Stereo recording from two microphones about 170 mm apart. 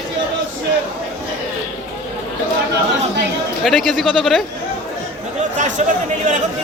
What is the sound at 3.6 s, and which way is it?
Speech, centre (ahead or behind).